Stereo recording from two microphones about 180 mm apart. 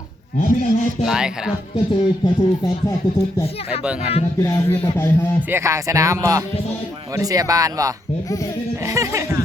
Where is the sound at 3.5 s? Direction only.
35° left (ahead or behind).